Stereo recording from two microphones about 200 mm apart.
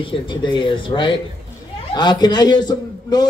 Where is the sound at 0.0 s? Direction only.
25° left (ahead or behind).